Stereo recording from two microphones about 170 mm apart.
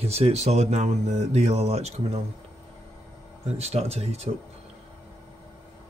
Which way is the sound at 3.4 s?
40° right (ahead or behind).